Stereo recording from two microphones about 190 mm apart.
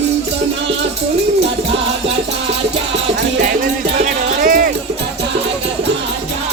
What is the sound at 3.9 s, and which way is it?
Music, 45° right (ahead or behind).